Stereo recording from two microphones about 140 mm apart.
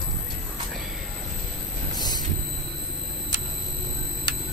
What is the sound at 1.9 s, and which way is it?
Vehicle, 30° left (ahead or behind).